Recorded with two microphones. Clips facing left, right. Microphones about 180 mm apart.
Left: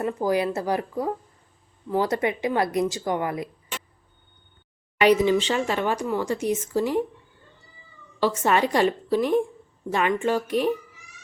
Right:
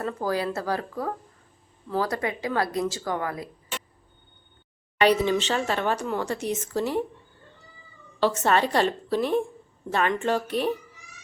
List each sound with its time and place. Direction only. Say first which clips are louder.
0.0 s speech: left 4 dB; 15° left (ahead or behind)
5.0 s speech: left 3 dB; 10° left (ahead or behind)
8.2 s speech: left 1 dB; 10° left (ahead or behind)